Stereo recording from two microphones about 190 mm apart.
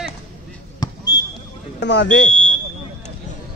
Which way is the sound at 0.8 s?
20° left (ahead or behind).